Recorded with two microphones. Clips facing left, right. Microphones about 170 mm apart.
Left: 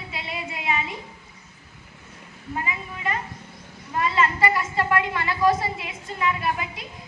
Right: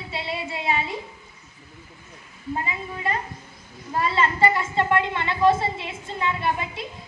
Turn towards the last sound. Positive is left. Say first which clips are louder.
# right 1 dB
turn(degrees=-30)  # may be behind; listen again after turning